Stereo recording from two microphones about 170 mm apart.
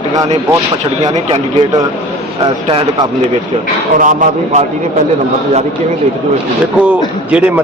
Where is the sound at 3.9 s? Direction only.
50° right (ahead or behind).